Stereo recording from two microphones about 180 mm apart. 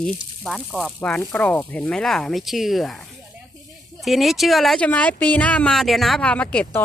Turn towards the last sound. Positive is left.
turn(degrees=5)  # may be behind; listen again after turning